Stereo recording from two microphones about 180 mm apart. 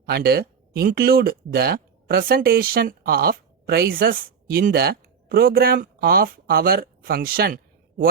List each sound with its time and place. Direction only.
0.0 s speech: 60° right (ahead or behind)